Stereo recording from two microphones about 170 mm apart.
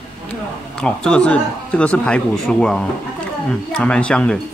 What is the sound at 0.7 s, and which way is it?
Speech, 5° left (ahead or behind).